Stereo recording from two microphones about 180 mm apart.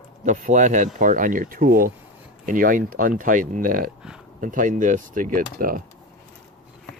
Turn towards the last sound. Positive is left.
turn(degrees=-50)  # may be behind; listen again after turning